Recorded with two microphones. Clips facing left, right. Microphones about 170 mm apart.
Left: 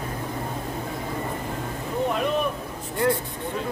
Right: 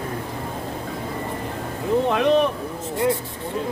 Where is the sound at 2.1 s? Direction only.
75° right (ahead or behind).